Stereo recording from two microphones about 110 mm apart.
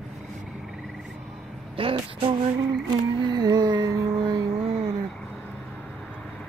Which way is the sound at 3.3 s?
40° right (ahead or behind).